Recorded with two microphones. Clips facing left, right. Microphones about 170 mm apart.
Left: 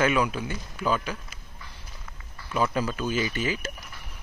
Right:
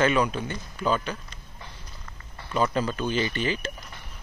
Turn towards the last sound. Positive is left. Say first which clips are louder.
# right 1 dB
turn(degrees=5)  # may be behind; listen again after turning